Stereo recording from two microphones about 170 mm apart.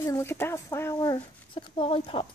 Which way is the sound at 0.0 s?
15° left (ahead or behind).